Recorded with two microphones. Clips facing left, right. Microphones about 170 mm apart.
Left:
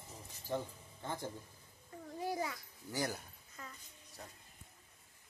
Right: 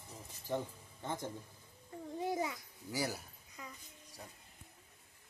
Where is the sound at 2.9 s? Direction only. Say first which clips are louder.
Even; 10° right (ahead or behind).